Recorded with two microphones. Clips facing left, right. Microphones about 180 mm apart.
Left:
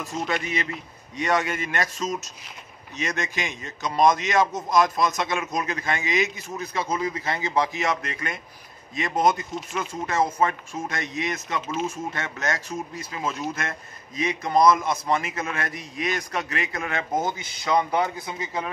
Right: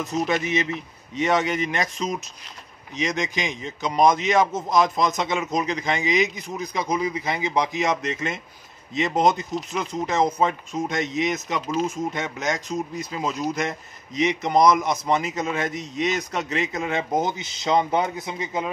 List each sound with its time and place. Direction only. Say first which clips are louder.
0.3 s a man's voice: right 4 dB; 20° right (ahead or behind)
11.6 s speech: right 5 dB; centre (ahead or behind)
11.9 s a man's voice: right 4 dB; 15° right (ahead or behind)